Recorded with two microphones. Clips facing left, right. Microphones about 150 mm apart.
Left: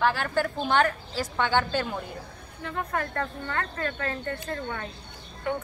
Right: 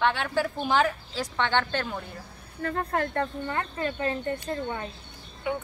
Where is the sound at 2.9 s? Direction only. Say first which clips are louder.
Right 2 dB; 25° right (ahead or behind).